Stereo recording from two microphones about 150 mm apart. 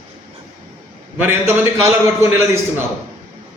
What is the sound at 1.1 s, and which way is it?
Speech, 15° right (ahead or behind).